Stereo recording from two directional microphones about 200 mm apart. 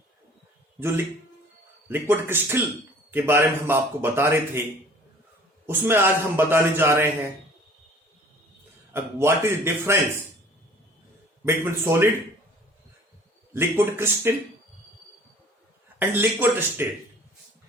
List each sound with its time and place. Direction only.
0.8 s speech: 10° right (ahead or behind)
5.6 s speech: 10° right (ahead or behind)
8.9 s speech: 10° right (ahead or behind)
11.4 s speech: 10° right (ahead or behind)
13.5 s speech: 10° right (ahead or behind)
16.0 s speech: 10° right (ahead or behind)